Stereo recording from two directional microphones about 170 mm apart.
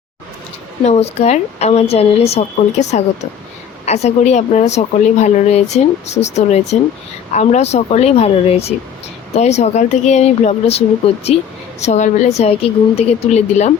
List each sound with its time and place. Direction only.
0.9 s a woman's voice: 40° left (ahead or behind)